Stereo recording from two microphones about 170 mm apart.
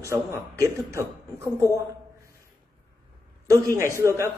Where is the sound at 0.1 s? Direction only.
15° right (ahead or behind).